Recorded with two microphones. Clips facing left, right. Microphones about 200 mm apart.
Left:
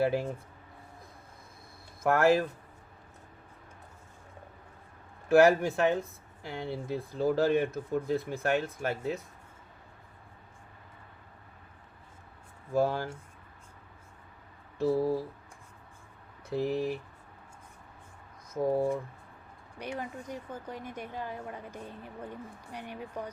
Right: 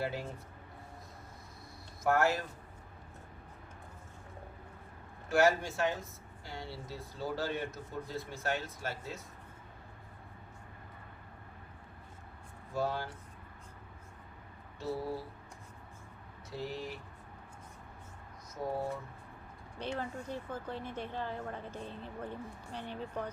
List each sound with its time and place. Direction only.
0.0 s speech: 55° left (ahead or behind)
2.0 s speech: 60° left (ahead or behind)
5.3 s speech: 60° left (ahead or behind)
12.7 s speech: 50° left (ahead or behind)
14.8 s speech: 50° left (ahead or behind)
16.5 s speech: 55° left (ahead or behind)
18.6 s speech: 55° left (ahead or behind)
19.8 s a woman's voice: 15° left (ahead or behind)